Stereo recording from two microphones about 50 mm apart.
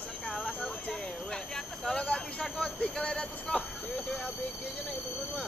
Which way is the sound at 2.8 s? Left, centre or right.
Left.